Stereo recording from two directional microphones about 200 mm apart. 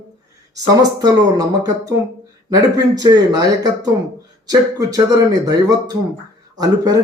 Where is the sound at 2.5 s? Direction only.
20° right (ahead or behind).